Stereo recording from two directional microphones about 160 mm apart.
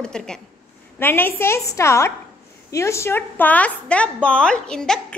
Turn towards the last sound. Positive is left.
turn(degrees=5)  # may be behind; listen again after turning